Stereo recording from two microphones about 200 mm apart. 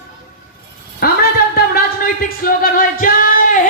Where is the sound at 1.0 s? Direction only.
50° left (ahead or behind).